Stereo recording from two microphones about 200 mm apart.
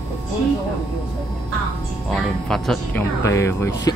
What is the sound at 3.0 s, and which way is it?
Speech, 15° left (ahead or behind).